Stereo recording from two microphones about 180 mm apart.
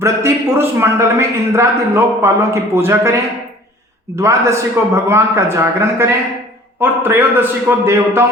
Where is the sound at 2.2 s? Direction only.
15° right (ahead or behind).